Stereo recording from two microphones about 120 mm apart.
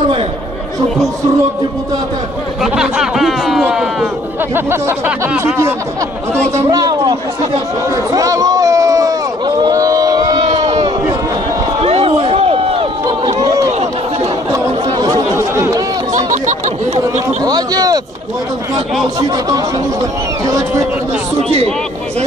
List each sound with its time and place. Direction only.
2.6 s speech: 5° right (ahead or behind)
4.6 s speech: 20° right (ahead or behind)
6.6 s speech: 30° right (ahead or behind)
9.7 s a sound: 30° right (ahead or behind)
11.8 s a sound: 55° right (ahead or behind)
14.5 s chatter: 30° right (ahead or behind)
16.1 s a sound: 90° right; by 17.4 s 65° right (ahead or behind)
17.4 s speech: 35° right (ahead or behind)
19.1 s speech: 30° right (ahead or behind)